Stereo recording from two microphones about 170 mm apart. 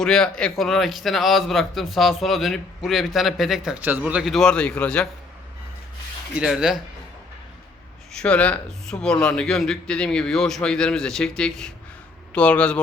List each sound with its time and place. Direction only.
0.0 s speech: 5° left (ahead or behind)
6.3 s speech: 5° right (ahead or behind)
8.1 s speech: 5° left (ahead or behind)